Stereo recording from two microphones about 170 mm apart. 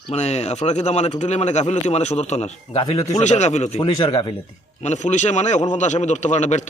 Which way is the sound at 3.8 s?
30° left (ahead or behind).